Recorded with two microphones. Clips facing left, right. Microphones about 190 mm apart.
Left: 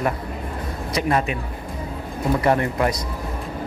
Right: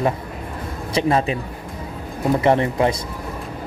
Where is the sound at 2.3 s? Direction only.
25° right (ahead or behind).